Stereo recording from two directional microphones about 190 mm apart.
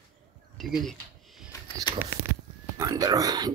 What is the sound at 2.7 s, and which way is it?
Speech, 20° right (ahead or behind).